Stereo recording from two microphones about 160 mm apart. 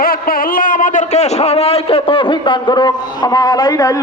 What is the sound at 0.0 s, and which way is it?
A man's voice, 65° left (ahead or behind).